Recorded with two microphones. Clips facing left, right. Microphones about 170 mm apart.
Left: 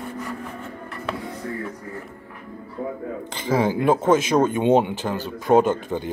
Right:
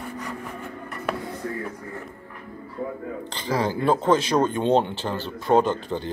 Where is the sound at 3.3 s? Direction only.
20° left (ahead or behind).